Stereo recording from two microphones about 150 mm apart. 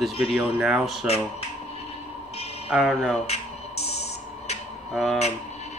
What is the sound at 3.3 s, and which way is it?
Music, 45° left (ahead or behind).